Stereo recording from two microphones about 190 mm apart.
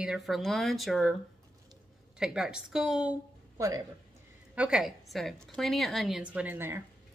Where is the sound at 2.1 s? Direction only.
5° right (ahead or behind).